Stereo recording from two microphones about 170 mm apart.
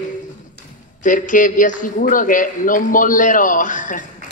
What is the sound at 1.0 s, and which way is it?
A man's voice, 50° left (ahead or behind).